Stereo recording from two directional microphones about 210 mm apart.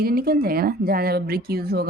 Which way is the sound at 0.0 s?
45° right (ahead or behind).